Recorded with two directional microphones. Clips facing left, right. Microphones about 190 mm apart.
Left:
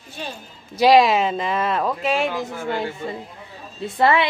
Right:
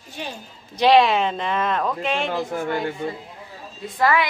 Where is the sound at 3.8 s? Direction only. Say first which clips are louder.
Left 2 dB; 25° left (ahead or behind).